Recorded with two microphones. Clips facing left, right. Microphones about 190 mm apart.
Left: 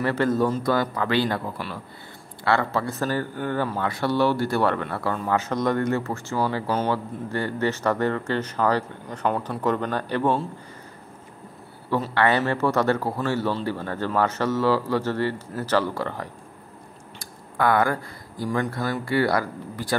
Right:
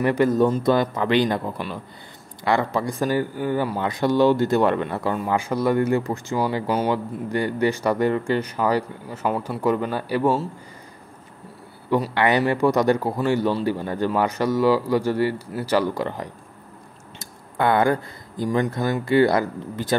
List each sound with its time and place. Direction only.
0.0 s speech: 15° right (ahead or behind)
11.9 s speech: 15° right (ahead or behind)
17.2 s a sound: 25° right (ahead or behind)
18.4 s speech: 20° right (ahead or behind)